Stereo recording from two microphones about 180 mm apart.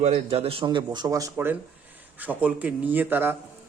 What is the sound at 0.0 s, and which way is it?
A man's voice, 35° right (ahead or behind).